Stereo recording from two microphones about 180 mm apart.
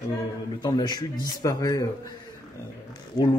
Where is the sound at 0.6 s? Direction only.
25° left (ahead or behind).